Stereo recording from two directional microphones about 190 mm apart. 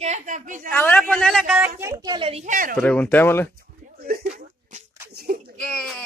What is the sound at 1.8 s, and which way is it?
Speech, 15° right (ahead or behind).